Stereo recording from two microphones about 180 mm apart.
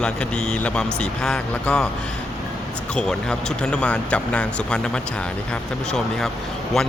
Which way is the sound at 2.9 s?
5° left (ahead or behind).